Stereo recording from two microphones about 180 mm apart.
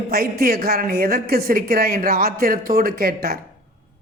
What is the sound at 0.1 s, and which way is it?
A woman's voice, 55° right (ahead or behind).